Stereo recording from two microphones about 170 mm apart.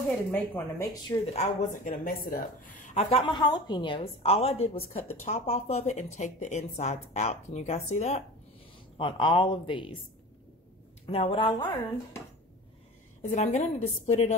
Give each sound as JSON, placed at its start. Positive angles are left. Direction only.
{"t": 0.3, "sound": "speech", "side_deg": 15}
{"t": 1.0, "sound": "speech", "side_deg": 40}
{"t": 8.9, "sound": "speech", "side_deg": 30}
{"t": 11.1, "sound": "speech", "side_deg": 35}
{"t": 13.3, "sound": "a woman's voice", "side_deg": 45}